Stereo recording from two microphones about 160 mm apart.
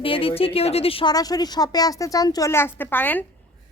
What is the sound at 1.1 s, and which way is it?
A woman's voice, 25° left (ahead or behind).